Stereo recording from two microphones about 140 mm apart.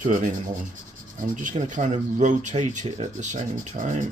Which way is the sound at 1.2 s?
65° right (ahead or behind).